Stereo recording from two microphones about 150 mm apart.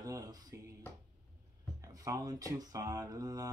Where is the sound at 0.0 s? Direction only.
25° right (ahead or behind).